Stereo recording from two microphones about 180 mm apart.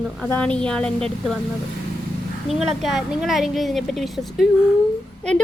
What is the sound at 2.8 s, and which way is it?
A woman's voice, centre (ahead or behind).